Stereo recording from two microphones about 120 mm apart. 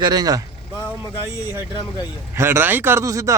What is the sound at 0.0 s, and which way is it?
Speech, 35° right (ahead or behind).